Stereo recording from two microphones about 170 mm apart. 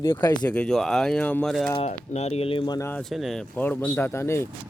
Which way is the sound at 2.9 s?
5° left (ahead or behind).